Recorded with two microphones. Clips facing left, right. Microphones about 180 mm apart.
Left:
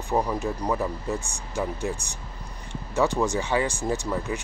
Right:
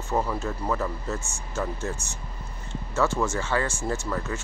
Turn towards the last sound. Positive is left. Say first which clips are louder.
# left 2 dB
turn(degrees=15)  # may be behind; listen again after turning